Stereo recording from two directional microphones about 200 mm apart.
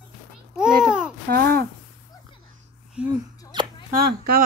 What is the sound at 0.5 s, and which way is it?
Babbling, centre (ahead or behind).